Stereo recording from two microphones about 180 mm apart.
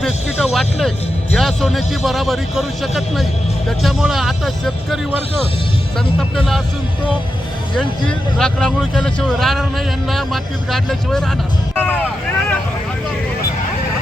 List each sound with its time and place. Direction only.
0.5 s speech: centre (ahead or behind)
6.1 s speech: centre (ahead or behind)
7.8 s speech: 5° left (ahead or behind)